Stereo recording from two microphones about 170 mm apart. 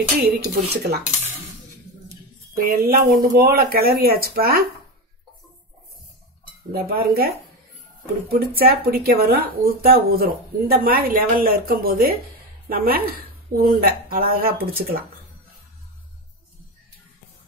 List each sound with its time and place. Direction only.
0.2 s dishes: 70° right (ahead or behind)
2.5 s speech: 60° right (ahead or behind)
6.7 s speech: 60° right (ahead or behind)
8.3 s speech: 65° right (ahead or behind)